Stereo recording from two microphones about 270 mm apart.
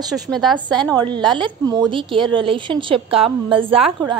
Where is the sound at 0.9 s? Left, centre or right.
Centre.